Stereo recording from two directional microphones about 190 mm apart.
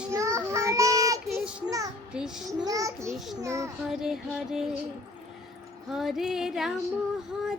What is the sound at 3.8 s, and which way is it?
Music, centre (ahead or behind).